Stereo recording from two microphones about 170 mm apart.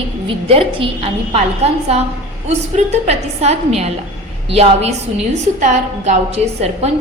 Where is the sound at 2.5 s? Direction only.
40° right (ahead or behind).